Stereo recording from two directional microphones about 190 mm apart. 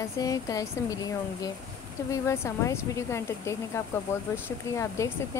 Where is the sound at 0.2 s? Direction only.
20° left (ahead or behind).